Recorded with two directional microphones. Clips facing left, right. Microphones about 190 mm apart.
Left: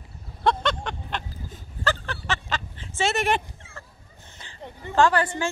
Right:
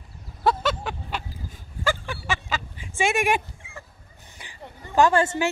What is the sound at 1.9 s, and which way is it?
Dog, 10° right (ahead or behind).